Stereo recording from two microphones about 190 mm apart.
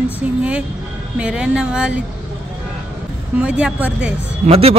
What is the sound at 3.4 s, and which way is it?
Speech, 5° right (ahead or behind).